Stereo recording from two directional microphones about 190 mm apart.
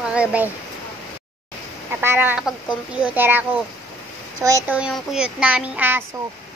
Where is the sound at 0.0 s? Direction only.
5° right (ahead or behind).